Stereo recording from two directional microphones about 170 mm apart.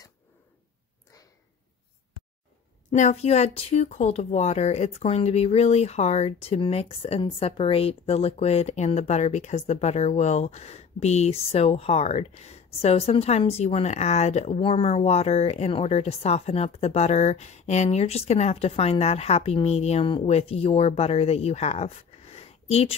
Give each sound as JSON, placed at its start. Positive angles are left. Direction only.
{"t": 2.9, "sound": "speech", "side_deg": 40}